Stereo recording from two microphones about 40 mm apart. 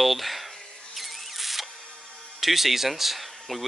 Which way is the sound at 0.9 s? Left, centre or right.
Centre.